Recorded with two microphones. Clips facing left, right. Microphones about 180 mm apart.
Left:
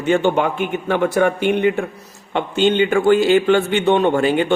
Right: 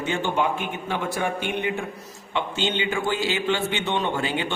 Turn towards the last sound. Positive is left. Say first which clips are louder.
# left 10 dB
turn(degrees=50)  # may be behind; listen again after turning